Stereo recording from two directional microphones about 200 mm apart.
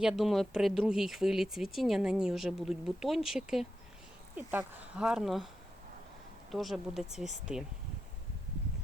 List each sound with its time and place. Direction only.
0.0 s speech: centre (ahead or behind)
6.5 s speech: centre (ahead or behind)